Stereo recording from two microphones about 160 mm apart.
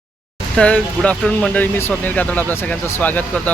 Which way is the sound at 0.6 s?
5° left (ahead or behind).